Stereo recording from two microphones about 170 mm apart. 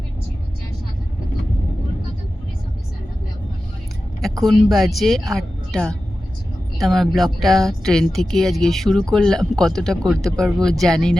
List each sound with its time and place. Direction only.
4.2 s speech: centre (ahead or behind)